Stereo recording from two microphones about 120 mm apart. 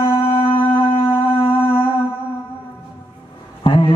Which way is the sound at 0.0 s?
50° left (ahead or behind).